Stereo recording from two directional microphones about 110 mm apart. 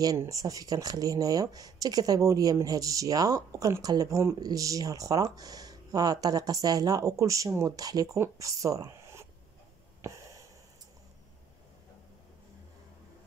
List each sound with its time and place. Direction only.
0.2 s speech: 30° right (ahead or behind)